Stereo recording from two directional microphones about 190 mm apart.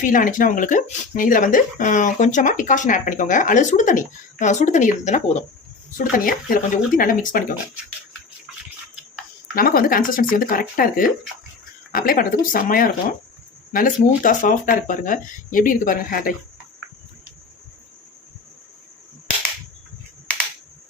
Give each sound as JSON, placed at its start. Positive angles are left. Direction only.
{"t": 0.0, "sound": "speech", "side_deg": 45}
{"t": 8.5, "sound": "a sound", "side_deg": 0}
{"t": 9.6, "sound": "speech", "side_deg": 50}